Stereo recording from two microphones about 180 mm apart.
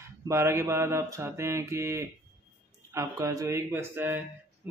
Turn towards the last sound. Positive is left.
turn(degrees=-15)  # may be behind; listen again after turning